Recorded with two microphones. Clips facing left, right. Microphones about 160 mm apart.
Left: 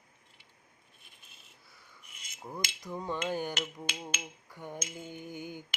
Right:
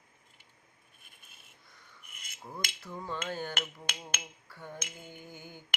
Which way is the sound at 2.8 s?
15° left (ahead or behind).